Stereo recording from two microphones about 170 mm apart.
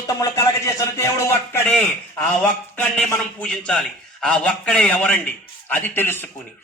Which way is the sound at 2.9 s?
10° left (ahead or behind).